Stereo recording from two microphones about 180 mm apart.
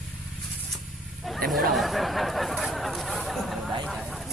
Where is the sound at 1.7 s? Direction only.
Centre (ahead or behind).